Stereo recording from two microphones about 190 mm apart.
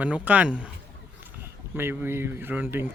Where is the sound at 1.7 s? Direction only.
10° right (ahead or behind).